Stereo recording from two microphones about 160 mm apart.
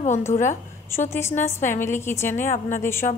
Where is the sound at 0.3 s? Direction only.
50° left (ahead or behind).